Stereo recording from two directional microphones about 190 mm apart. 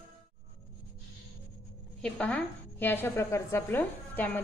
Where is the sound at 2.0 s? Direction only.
5° left (ahead or behind).